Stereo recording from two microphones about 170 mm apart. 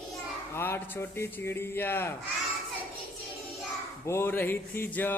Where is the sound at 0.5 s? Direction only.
15° left (ahead or behind).